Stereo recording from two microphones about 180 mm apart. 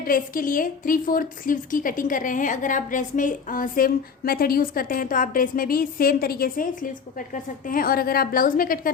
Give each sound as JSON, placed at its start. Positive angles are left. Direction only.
{"t": 0.0, "sound": "a woman's voice", "side_deg": 50}